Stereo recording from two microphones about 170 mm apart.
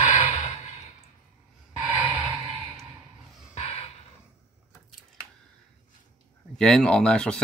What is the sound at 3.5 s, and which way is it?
Dog, 40° left (ahead or behind).